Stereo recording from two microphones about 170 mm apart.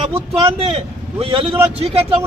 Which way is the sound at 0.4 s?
35° right (ahead or behind).